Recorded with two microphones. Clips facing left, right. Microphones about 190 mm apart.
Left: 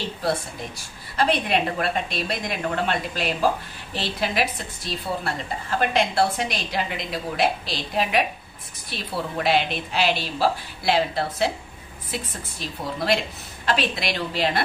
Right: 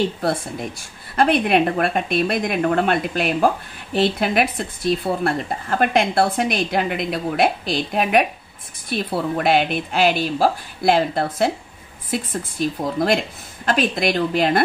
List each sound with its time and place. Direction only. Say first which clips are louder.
1.1 s a woman's voice: right 5 dB; 55° right (ahead or behind)